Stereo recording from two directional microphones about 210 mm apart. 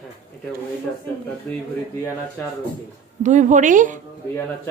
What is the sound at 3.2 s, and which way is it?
Speech, 35° right (ahead or behind).